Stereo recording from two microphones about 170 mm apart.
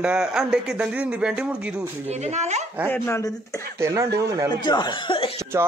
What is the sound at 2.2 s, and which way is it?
Speech, 40° right (ahead or behind).